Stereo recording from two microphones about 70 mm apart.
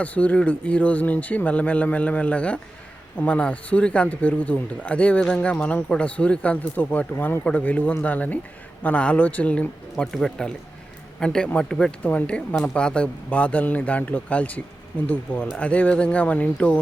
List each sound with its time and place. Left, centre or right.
0.0 s speech: left
10.0 s speech: centre